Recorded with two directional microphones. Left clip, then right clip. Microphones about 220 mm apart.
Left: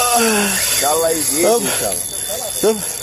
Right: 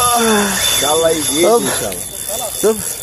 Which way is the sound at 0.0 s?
10° left (ahead or behind).